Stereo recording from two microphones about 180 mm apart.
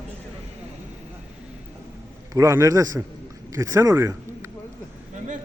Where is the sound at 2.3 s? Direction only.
15° right (ahead or behind).